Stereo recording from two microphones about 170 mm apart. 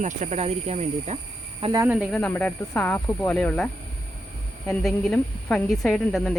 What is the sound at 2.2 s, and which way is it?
Speech, 10° left (ahead or behind).